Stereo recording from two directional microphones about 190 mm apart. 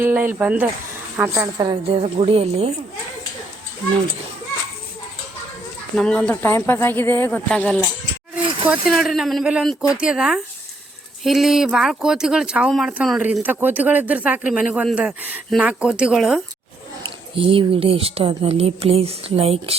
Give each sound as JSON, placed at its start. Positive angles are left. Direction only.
{"t": 0.0, "sound": "a woman's voice", "side_deg": -10}
{"t": 6.0, "sound": "speech", "side_deg": 5}
{"t": 17.0, "sound": "speech", "side_deg": -30}